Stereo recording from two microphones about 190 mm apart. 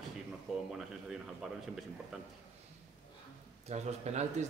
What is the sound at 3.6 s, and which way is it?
Speech, 35° right (ahead or behind).